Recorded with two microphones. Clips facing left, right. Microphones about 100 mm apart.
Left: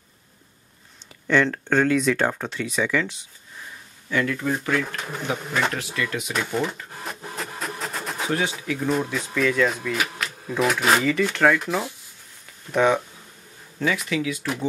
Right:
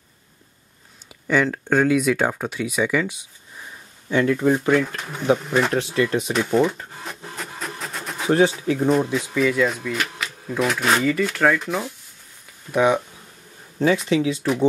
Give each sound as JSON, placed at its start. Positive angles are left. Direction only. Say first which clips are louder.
{"t": 1.2, "sound": "speech", "louder": "even", "side_deg": -5}
{"t": 4.1, "sound": "speech", "louder": "right 6 dB", "side_deg": -25}
{"t": 4.8, "sound": "speech", "louder": "right 2 dB", "side_deg": 0}
{"t": 5.9, "sound": "speech", "louder": "right 7 dB", "side_deg": -30}
{"t": 6.3, "sound": "speech", "louder": "right 6 dB", "side_deg": 0}
{"t": 6.9, "sound": "a sound", "louder": "left 1 dB", "side_deg": 0}
{"t": 8.6, "sound": "speech", "louder": "right 6 dB", "side_deg": -30}
{"t": 8.9, "sound": "speech", "louder": "right 4 dB", "side_deg": 0}
{"t": 12.7, "sound": "speech", "louder": "right 1 dB", "side_deg": -10}
{"t": 13.7, "sound": "speech", "louder": "right 6 dB", "side_deg": -30}